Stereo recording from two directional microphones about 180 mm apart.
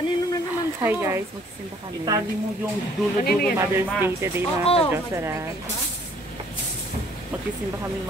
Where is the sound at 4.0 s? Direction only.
15° right (ahead or behind).